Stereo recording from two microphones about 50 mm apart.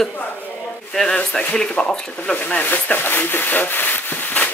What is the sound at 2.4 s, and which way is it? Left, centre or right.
Speech, left.